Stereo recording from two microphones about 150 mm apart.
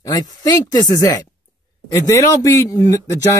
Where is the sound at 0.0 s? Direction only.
25° left (ahead or behind).